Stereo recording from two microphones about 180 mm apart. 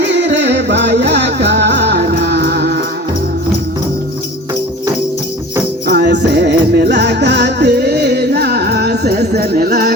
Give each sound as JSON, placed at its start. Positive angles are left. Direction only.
{"t": 0.0, "sound": "music", "side_deg": -80}
{"t": 5.8, "sound": "music", "side_deg": -70}